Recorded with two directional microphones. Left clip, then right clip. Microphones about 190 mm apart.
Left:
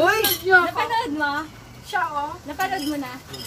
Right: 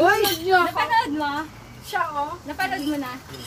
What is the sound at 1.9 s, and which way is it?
Speech, 55° right (ahead or behind).